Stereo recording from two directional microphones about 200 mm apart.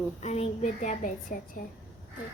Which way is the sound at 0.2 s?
35° left (ahead or behind).